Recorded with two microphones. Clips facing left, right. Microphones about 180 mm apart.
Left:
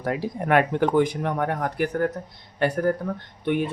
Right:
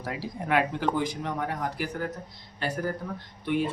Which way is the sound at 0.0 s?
55° left (ahead or behind).